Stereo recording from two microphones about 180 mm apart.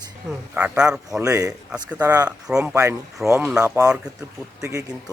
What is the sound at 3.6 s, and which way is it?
Speech, 15° right (ahead or behind).